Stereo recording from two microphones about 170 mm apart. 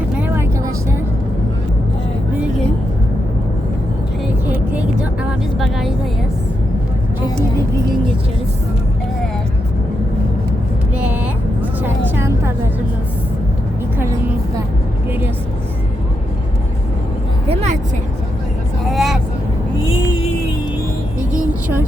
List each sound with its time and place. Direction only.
0.2 s vehicle: 15° right (ahead or behind)
4.4 s vehicle: 10° right (ahead or behind)
10.9 s vehicle: 5° right (ahead or behind)
17.5 s vehicle: 40° right (ahead or behind)
18.9 s vehicle: centre (ahead or behind)
19.8 s vehicle: 30° left (ahead or behind)